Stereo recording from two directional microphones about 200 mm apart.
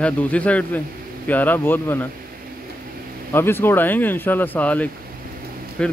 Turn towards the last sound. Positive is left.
turn(degrees=5)  # may be behind; listen again after turning